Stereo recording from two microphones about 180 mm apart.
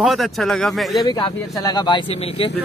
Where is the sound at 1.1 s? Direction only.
25° left (ahead or behind).